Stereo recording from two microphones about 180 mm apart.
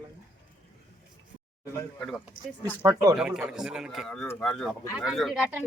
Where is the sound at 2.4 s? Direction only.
90° left.